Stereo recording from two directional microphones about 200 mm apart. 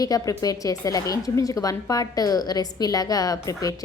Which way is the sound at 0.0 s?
20° left (ahead or behind).